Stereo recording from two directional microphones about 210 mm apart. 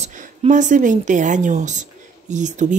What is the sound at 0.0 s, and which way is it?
A woman's voice, 35° right (ahead or behind).